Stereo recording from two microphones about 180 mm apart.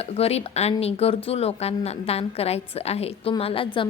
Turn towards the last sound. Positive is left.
turn(degrees=30)  # may be behind; listen again after turning